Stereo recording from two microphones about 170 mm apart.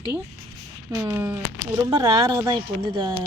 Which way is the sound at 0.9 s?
15° right (ahead or behind).